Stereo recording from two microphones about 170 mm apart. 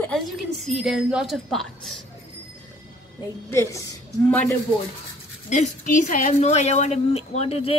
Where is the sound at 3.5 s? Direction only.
15° left (ahead or behind).